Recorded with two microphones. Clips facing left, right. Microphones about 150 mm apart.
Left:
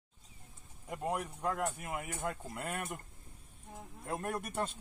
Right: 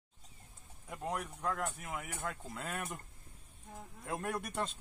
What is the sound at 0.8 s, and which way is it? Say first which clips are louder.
Speech: left 3 dB; 10° left (ahead or behind).